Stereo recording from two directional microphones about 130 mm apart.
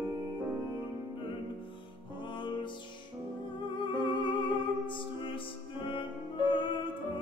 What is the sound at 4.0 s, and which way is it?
Music, 40° left (ahead or behind).